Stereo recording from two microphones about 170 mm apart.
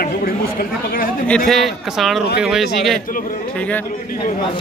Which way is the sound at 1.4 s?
Centre (ahead or behind).